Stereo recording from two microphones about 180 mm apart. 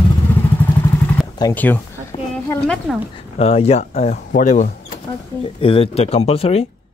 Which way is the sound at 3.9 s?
45° left (ahead or behind).